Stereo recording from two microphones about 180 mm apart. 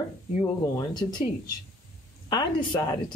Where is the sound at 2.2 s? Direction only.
25° left (ahead or behind).